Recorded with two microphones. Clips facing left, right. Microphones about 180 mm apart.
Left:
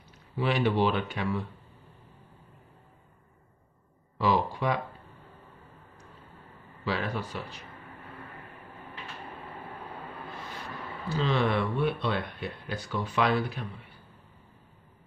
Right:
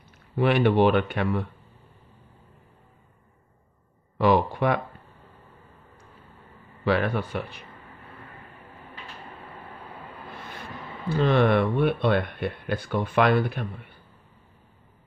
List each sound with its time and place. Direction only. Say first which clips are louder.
0.4 s speech: right 6 dB; 60° right (ahead or behind)
4.2 s speech: right 6 dB; 60° right (ahead or behind)
6.8 s speech: right 7 dB; 60° right (ahead or behind)
11.1 s speech: right 7 dB; 55° right (ahead or behind)